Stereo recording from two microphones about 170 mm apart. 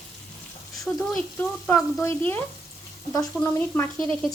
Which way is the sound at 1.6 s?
5° left (ahead or behind).